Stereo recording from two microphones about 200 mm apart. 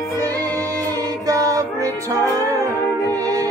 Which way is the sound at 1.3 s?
15° right (ahead or behind).